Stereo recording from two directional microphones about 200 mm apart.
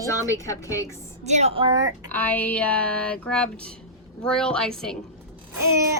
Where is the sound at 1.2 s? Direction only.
35° right (ahead or behind).